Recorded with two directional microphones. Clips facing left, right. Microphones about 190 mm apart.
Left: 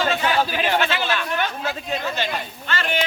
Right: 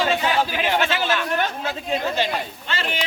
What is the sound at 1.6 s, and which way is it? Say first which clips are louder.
Speech: right 2 dB; 25° right (ahead or behind).